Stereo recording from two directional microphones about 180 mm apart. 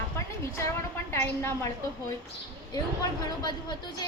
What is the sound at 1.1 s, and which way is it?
Speech, 15° left (ahead or behind).